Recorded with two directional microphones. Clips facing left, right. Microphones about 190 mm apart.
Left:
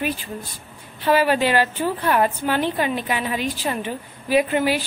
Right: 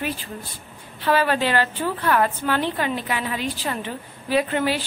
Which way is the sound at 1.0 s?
15° left (ahead or behind).